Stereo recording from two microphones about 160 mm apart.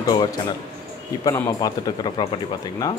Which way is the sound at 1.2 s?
20° left (ahead or behind).